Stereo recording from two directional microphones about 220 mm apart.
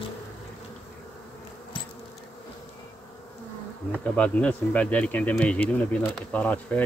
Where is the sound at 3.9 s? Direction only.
5° left (ahead or behind).